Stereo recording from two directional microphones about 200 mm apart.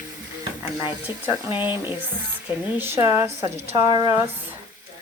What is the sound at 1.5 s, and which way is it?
Speech, 25° left (ahead or behind).